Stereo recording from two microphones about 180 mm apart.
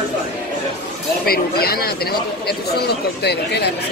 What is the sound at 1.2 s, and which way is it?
Speech, 55° left (ahead or behind).